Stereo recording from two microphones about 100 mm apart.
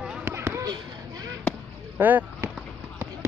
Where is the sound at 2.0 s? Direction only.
15° right (ahead or behind).